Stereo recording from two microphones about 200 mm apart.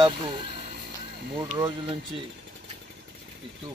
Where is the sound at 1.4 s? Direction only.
25° right (ahead or behind).